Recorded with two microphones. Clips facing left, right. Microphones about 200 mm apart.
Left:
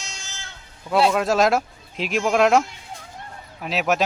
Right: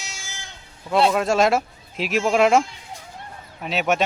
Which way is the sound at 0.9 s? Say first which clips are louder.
Even; centre (ahead or behind).